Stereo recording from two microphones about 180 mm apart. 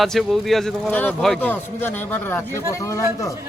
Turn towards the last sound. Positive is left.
turn(degrees=20)  # may be behind; listen again after turning